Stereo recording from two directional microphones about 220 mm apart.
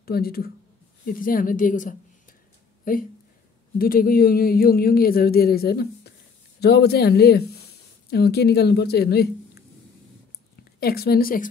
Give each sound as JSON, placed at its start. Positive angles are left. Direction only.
{"t": 0.0, "sound": "a woman's voice", "side_deg": 45}
{"t": 10.8, "sound": "speech", "side_deg": 45}